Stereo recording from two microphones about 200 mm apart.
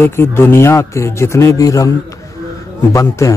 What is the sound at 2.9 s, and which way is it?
Speech, 15° left (ahead or behind).